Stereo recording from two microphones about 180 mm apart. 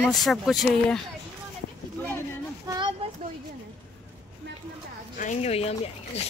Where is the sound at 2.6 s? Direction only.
25° right (ahead or behind).